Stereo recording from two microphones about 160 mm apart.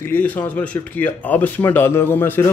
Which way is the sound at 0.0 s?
10° left (ahead or behind).